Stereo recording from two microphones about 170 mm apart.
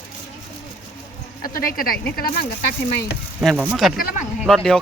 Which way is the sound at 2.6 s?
70° left (ahead or behind).